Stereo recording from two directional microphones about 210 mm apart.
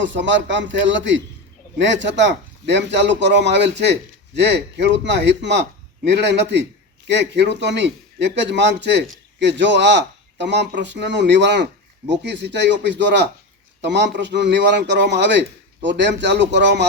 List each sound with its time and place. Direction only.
0.0 s a man's voice: 60° right (ahead or behind)